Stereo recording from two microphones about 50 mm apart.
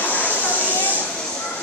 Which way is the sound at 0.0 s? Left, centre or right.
Left.